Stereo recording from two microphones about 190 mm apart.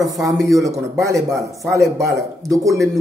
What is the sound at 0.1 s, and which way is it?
A man's voice, 20° right (ahead or behind).